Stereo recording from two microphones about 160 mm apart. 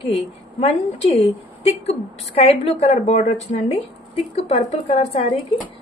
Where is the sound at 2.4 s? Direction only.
40° left (ahead or behind).